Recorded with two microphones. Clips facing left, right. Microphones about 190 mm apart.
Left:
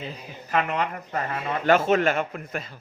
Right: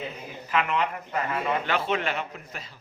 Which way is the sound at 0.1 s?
40° left (ahead or behind).